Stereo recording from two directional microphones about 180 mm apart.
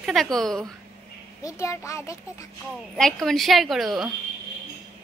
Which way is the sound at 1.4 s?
15° left (ahead or behind).